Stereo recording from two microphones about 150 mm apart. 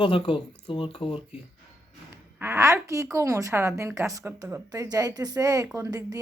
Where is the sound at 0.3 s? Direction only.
35° left (ahead or behind).